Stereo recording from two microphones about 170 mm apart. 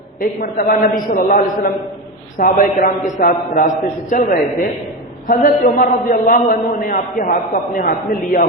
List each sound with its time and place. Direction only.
0.2 s a man's voice: 55° left (ahead or behind)